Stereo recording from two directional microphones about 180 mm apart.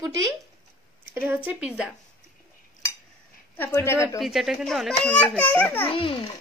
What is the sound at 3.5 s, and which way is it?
Speech, 15° left (ahead or behind).